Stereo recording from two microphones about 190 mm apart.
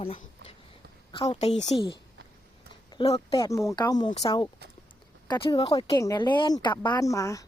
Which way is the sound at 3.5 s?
15° left (ahead or behind).